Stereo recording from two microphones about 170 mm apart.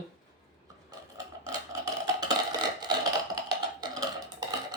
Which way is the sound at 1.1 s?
20° right (ahead or behind).